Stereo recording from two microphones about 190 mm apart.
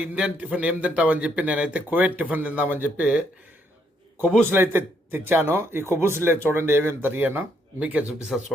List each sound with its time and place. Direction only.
0.0 s speech: 5° right (ahead or behind)
4.4 s speech: 10° right (ahead or behind)